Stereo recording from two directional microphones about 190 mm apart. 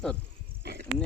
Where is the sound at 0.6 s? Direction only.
60° right (ahead or behind).